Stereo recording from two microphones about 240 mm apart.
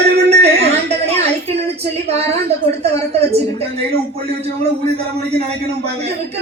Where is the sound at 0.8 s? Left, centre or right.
Right.